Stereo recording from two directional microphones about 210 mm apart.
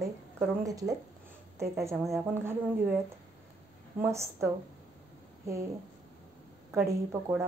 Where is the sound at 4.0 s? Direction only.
15° right (ahead or behind).